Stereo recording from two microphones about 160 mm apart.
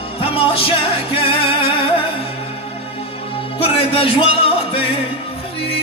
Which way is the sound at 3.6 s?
35° left (ahead or behind).